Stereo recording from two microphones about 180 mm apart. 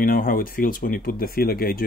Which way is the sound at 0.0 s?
55° left (ahead or behind).